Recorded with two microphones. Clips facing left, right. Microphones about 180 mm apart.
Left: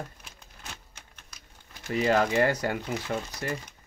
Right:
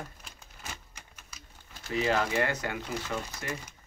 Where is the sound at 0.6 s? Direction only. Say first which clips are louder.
Right 1 dB; 5° right (ahead or behind).